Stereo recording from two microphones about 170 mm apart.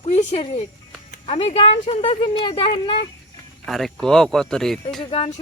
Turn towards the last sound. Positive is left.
turn(degrees=30)  # may be behind; listen again after turning